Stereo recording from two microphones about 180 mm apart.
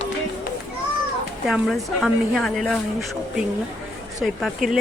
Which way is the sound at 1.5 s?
Centre (ahead or behind).